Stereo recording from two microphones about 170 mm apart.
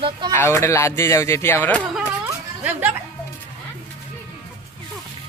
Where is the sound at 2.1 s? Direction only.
15° right (ahead or behind).